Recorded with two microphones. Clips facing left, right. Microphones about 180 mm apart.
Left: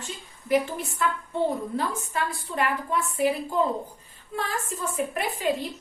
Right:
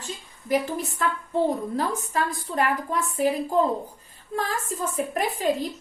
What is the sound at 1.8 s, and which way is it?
A woman's voice, 40° right (ahead or behind).